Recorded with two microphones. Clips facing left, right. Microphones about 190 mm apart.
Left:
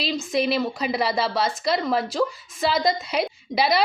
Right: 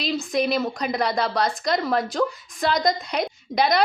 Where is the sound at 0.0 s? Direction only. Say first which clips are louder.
Even; centre (ahead or behind).